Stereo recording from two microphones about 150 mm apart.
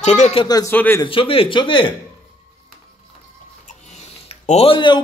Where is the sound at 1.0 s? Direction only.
35° left (ahead or behind).